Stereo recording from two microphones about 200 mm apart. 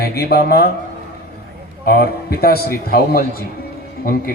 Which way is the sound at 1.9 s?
50° left (ahead or behind).